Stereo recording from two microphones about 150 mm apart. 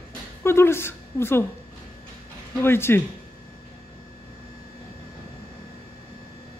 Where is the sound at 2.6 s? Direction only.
15° left (ahead or behind).